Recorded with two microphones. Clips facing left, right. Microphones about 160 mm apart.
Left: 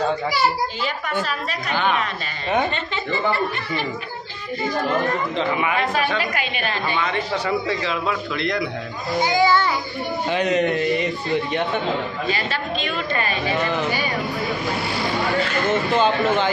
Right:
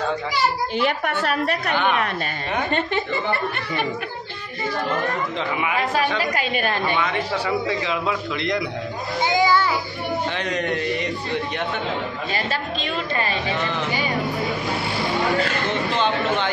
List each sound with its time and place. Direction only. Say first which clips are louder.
0.7 s a woman's voice: right 3 dB; 65° right (ahead or behind)
6.1 s a woman's voice: right 1 dB; 40° right (ahead or behind)
7.4 s a man's voice: even; 15° right (ahead or behind)
9.2 s children playing: left 1 dB; 20° right (ahead or behind)
10.3 s a man's voice: left 5 dB; 10° left (ahead or behind)
12.8 s a woman's voice: right 1 dB; 30° right (ahead or behind)
15.7 s speech: left 6 dB; 5° left (ahead or behind)